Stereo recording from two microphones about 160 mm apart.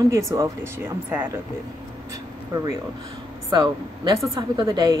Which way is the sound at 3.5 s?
25° right (ahead or behind).